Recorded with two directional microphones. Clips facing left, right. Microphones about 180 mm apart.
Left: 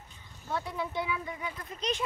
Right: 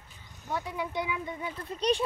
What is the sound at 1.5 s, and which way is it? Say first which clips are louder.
Speech: right 9 dB; 30° right (ahead or behind).